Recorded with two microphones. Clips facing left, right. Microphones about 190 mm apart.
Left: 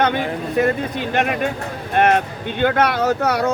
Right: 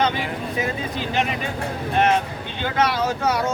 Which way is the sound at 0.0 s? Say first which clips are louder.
Left 4 dB; 55° left (ahead or behind).